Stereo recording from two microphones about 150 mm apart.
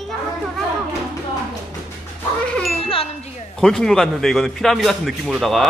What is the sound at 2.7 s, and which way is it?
Wind chime, 40° left (ahead or behind).